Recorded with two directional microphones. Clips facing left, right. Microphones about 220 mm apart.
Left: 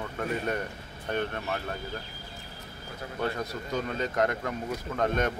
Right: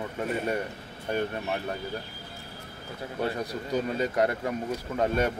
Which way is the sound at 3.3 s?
10° right (ahead or behind).